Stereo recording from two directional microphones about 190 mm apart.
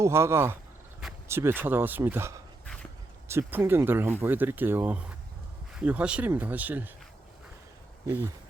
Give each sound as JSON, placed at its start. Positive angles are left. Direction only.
{"t": 0.0, "sound": "speech", "side_deg": -15}
{"t": 8.0, "sound": "speech", "side_deg": -15}